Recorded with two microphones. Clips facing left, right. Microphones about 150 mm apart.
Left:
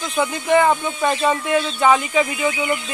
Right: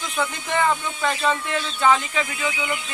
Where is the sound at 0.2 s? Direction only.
15° left (ahead or behind).